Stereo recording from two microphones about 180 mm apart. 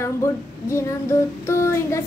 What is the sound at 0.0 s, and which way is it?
Female singing, 15° left (ahead or behind).